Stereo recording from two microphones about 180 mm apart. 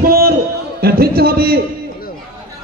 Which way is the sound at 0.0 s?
60° right (ahead or behind).